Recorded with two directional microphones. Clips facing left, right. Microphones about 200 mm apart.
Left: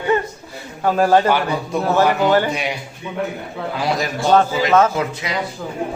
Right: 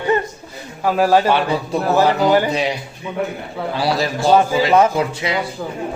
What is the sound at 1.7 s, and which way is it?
Speech, 30° right (ahead or behind).